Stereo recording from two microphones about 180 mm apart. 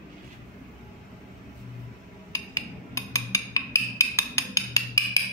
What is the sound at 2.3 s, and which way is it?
Music, 20° left (ahead or behind).